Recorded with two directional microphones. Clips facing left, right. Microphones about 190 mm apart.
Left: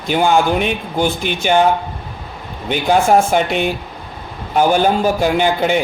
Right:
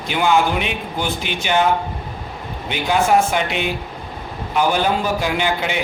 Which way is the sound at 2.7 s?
45° left (ahead or behind).